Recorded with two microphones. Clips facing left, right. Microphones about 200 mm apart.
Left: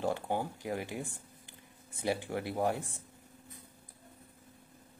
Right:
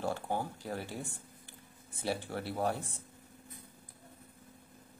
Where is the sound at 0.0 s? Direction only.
15° left (ahead or behind).